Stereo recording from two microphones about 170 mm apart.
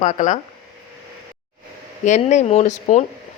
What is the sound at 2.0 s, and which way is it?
Speech, 45° left (ahead or behind).